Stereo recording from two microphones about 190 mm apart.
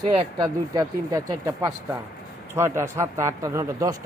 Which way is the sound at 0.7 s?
20° right (ahead or behind).